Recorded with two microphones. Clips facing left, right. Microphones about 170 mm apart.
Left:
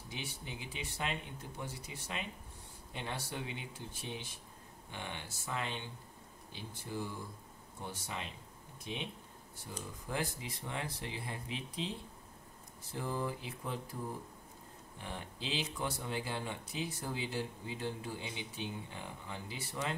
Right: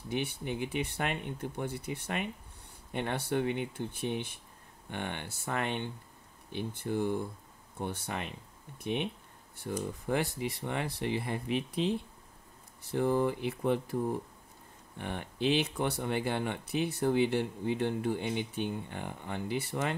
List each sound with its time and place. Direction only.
0.1 s speech: 60° right (ahead or behind)
15.0 s speech: 65° right (ahead or behind)